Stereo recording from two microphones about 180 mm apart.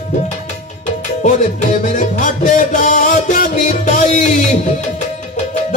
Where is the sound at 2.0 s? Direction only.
45° left (ahead or behind).